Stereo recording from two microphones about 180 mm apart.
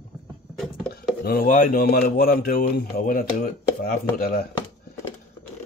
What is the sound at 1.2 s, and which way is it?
Speech, 55° left (ahead or behind).